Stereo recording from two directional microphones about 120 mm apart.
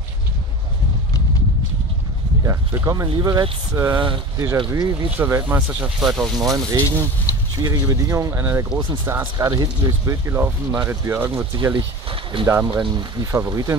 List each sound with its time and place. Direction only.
2.4 s speech: 25° right (ahead or behind)
5.1 s speech: 15° right (ahead or behind)
6.3 s speech: 30° right (ahead or behind)
7.3 s a sound: 30° left (ahead or behind)
7.6 s speech: 30° right (ahead or behind)
11.7 s a sound: 45° right (ahead or behind)
12.4 s speech: 20° right (ahead or behind)
12.7 s speech: 35° right (ahead or behind)